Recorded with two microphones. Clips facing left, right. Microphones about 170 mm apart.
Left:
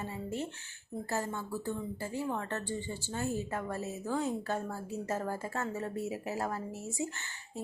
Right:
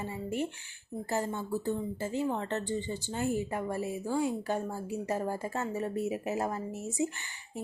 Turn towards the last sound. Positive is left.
turn(degrees=-15)  # may be behind; listen again after turning